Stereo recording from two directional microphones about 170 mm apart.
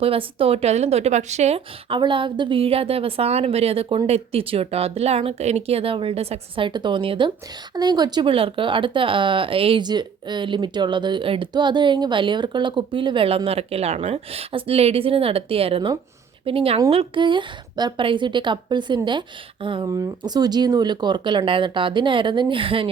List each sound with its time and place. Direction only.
0.0 s speech: 35° right (ahead or behind)